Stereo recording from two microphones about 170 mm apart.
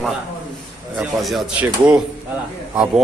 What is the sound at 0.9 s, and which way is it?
Speech, 5° right (ahead or behind).